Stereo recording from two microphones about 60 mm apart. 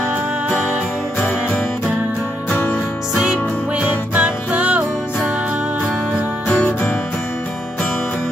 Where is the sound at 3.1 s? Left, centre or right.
Centre.